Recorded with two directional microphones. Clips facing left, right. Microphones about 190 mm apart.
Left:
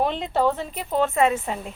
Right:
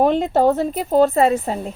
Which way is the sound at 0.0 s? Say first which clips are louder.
Right 7 dB; 45° right (ahead or behind).